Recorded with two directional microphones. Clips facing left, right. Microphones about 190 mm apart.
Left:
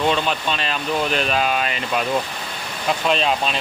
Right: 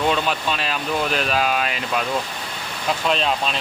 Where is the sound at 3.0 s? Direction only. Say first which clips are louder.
Left 1 dB; centre (ahead or behind).